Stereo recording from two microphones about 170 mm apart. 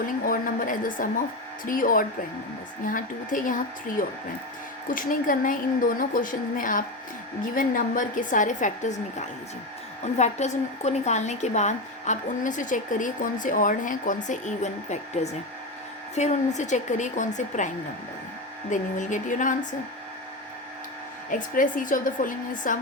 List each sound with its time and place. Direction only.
0.0 s a woman's voice: 55° left (ahead or behind)
18.7 s a woman's voice: 45° left (ahead or behind)
21.2 s a woman's voice: 50° left (ahead or behind)